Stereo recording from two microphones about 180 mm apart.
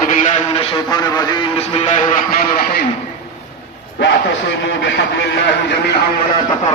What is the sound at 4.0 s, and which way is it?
A man's voice, 75° left (ahead or behind).